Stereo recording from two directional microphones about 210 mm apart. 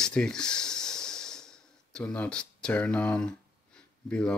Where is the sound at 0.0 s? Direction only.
5° left (ahead or behind).